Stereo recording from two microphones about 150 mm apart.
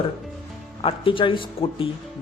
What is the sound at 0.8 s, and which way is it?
Speech, 35° left (ahead or behind).